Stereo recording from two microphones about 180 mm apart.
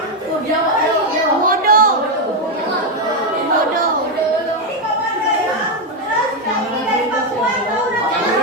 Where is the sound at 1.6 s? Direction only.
50° right (ahead or behind).